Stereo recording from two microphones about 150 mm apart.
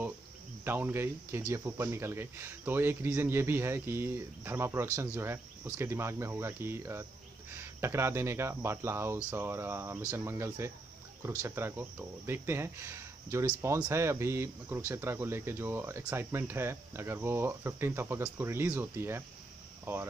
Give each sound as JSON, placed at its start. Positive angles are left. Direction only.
{"t": 0.7, "sound": "speech", "side_deg": -15}